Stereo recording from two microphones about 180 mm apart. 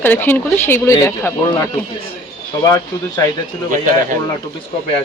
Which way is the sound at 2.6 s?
20° left (ahead or behind).